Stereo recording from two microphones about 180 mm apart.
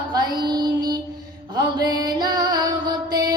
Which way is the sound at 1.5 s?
20° right (ahead or behind).